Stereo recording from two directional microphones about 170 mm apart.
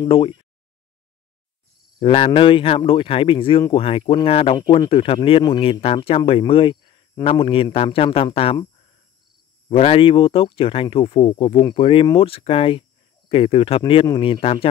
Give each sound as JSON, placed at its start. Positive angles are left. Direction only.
{"t": 0.0, "sound": "a sound", "side_deg": 30}
{"t": 2.0, "sound": "speech", "side_deg": 35}
{"t": 9.7, "sound": "speech", "side_deg": 35}